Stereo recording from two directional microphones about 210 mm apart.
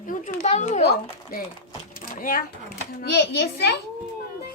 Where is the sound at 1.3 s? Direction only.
45° left (ahead or behind).